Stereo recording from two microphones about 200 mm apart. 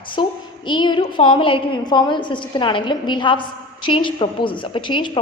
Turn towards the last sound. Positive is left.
turn(degrees=25)  # may be behind; listen again after turning